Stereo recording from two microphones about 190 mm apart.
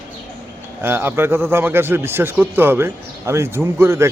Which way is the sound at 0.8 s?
10° right (ahead or behind).